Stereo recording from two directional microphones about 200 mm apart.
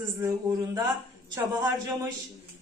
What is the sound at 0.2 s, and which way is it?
A woman's voice, 20° right (ahead or behind).